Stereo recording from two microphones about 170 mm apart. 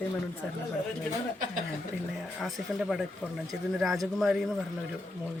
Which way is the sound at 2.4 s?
Centre (ahead or behind).